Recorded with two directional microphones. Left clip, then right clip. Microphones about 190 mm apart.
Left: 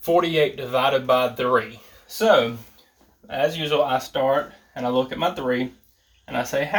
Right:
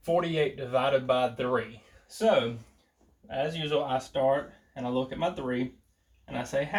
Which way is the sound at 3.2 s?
30° left (ahead or behind).